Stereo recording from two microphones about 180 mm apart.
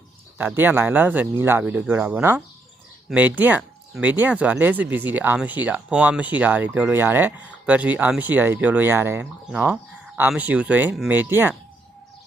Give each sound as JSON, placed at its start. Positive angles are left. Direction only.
{"t": 0.3, "sound": "speech", "side_deg": -10}